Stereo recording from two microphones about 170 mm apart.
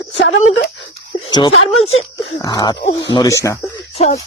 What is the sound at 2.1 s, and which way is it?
Speech, 20° left (ahead or behind).